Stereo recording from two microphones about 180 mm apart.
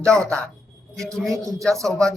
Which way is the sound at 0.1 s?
5° left (ahead or behind).